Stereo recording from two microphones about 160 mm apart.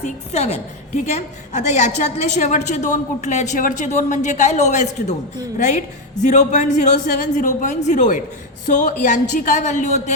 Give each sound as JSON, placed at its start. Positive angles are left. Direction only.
{"t": 0.0, "sound": "a woman's voice", "side_deg": 40}